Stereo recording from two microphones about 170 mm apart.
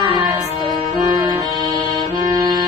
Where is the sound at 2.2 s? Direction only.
25° right (ahead or behind).